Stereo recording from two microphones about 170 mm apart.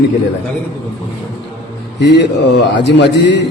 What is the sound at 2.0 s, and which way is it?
A man's voice, 90° left.